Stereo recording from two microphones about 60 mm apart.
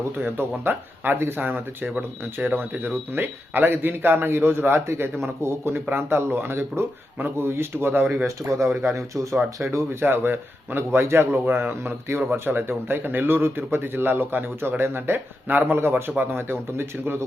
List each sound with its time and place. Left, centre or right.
0.2 s speech: right
8.4 s speech: right
9.7 s speech: right
11.8 s speech: right